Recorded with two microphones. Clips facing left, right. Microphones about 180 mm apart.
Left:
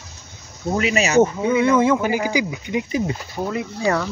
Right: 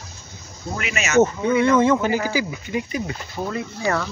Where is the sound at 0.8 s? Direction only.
35° left (ahead or behind).